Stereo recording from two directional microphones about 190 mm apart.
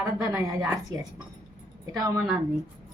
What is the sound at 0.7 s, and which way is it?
A woman's voice, 15° right (ahead or behind).